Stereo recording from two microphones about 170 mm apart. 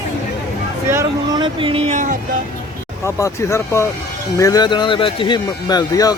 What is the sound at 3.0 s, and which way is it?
Speech, 15° left (ahead or behind).